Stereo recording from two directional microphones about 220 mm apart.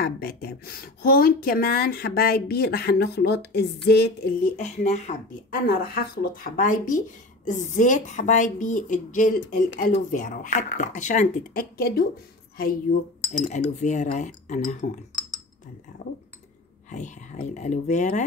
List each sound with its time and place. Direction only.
0.0 s speech: 45° left (ahead or behind)
4.6 s speech: 30° left (ahead or behind)
13.3 s speech: 30° left (ahead or behind)
16.9 s speech: 35° left (ahead or behind)